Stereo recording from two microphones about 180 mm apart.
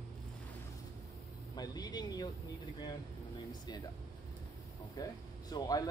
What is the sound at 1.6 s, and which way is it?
Speech, 20° left (ahead or behind).